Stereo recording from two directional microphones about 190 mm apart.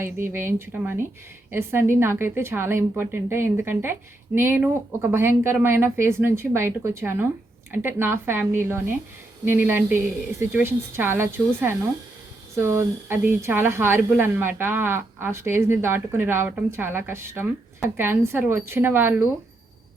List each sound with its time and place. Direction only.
0.3 s a woman's voice: 10° right (ahead or behind)